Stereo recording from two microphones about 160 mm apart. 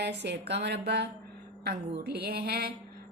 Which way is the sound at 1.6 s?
85° right.